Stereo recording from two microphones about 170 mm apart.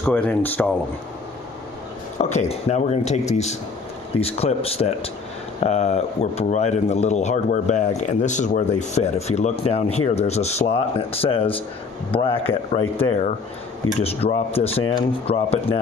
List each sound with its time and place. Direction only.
0.0 s speech: 10° left (ahead or behind)
2.1 s speech: 40° left (ahead or behind)
12.7 s speech: 35° left (ahead or behind)